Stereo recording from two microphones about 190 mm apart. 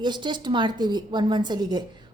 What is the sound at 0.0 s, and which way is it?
A woman's voice, 25° right (ahead or behind).